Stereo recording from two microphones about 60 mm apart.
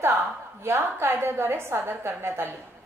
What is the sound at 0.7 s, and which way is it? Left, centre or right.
A woman's voice, right.